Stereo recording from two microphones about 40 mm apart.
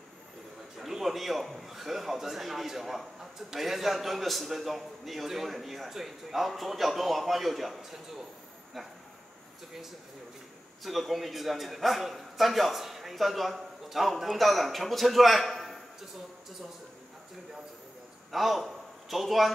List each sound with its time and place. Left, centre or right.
0.7 s a man's voice: centre
10.8 s a man's voice: centre
18.3 s a man's voice: centre